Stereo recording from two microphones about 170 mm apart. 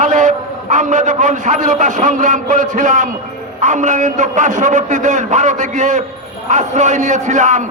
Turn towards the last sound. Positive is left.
turn(degrees=-45)  # may be behind; listen again after turning